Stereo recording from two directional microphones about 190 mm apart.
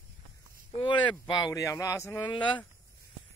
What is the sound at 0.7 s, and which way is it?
Speech, 25° left (ahead or behind).